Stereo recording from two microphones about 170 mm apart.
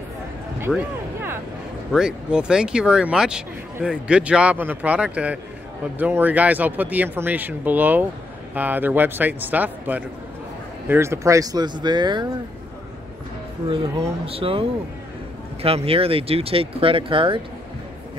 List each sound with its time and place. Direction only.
0.7 s speech: centre (ahead or behind)
1.9 s speech: 5° right (ahead or behind); by 12.3 s 25° right (ahead or behind)
13.7 s speech: 35° right (ahead or behind)